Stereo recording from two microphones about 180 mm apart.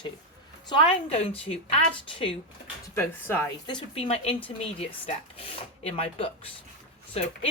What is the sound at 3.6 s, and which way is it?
Speech, 30° left (ahead or behind).